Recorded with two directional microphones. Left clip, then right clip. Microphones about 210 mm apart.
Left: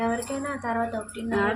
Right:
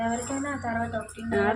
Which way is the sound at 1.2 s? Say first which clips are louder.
Even; centre (ahead or behind).